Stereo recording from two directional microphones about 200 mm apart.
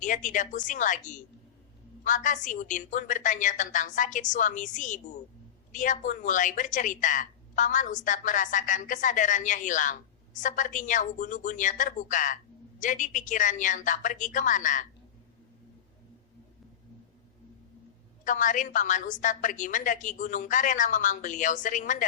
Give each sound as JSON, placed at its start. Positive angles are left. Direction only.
{"t": 0.0, "sound": "a woman's voice", "side_deg": 40}
{"t": 18.3, "sound": "a woman's voice", "side_deg": 40}